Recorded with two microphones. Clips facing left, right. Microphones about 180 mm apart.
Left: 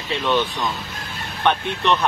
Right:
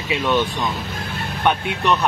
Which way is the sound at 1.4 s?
10° right (ahead or behind).